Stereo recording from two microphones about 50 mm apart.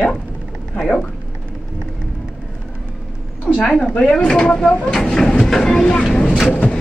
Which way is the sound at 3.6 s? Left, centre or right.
Centre.